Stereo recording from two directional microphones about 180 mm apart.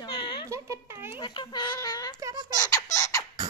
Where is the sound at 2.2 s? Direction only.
20° right (ahead or behind).